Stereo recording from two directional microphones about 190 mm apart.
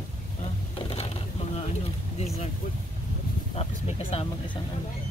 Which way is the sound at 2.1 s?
35° left (ahead or behind).